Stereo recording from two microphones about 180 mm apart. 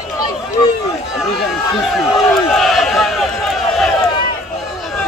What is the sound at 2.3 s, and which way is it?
Crowd, centre (ahead or behind).